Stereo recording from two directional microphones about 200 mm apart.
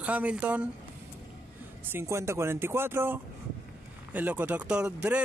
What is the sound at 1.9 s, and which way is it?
Speech, 15° right (ahead or behind).